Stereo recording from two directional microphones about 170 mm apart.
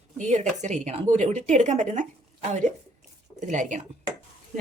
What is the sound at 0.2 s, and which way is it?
A woman's voice, 45° right (ahead or behind).